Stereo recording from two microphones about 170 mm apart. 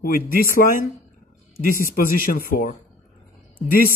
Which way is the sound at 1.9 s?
55° left (ahead or behind).